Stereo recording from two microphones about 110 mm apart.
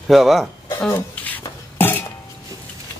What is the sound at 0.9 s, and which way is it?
Dishes, 15° left (ahead or behind).